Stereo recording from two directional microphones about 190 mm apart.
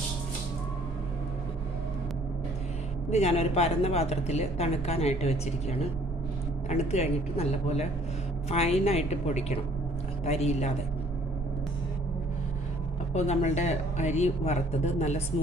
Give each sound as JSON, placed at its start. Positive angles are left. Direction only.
{"t": 3.1, "sound": "a woman's voice", "side_deg": 35}
{"t": 13.1, "sound": "a woman's voice", "side_deg": 35}